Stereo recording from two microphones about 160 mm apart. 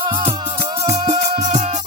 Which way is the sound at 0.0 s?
35° right (ahead or behind).